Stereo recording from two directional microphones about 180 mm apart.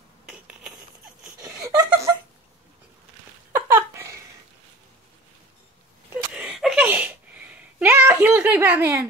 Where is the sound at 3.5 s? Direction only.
15° right (ahead or behind).